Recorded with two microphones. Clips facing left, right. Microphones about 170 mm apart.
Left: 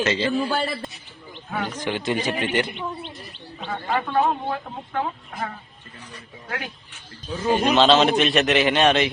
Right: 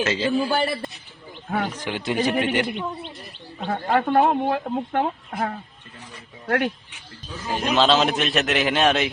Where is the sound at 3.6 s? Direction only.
50° right (ahead or behind).